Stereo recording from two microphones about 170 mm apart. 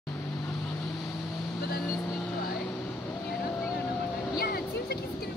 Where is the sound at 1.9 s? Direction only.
15° left (ahead or behind).